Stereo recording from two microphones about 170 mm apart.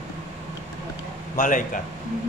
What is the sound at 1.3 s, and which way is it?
Speech, 50° left (ahead or behind).